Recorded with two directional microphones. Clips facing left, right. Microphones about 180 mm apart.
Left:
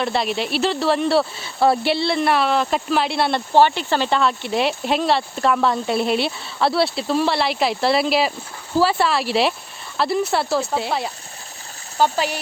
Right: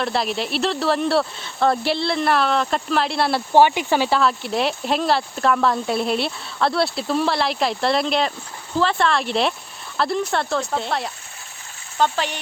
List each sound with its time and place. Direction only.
0.0 s speech: centre (ahead or behind)
3.5 s speech: 15° right (ahead or behind); by 12.3 s 10° left (ahead or behind)